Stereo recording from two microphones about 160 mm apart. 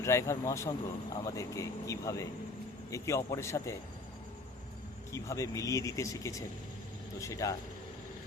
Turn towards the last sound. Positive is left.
turn(degrees=20)  # may be behind; listen again after turning